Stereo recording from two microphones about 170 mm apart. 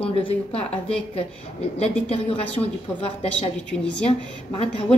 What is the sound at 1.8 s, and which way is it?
Speech, 35° left (ahead or behind).